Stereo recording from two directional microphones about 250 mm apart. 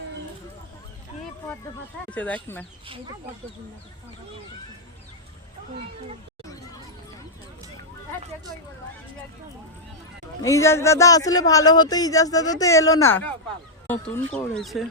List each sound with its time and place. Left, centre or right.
2.0 s speech: centre
2.8 s speech: right
10.4 s speech: centre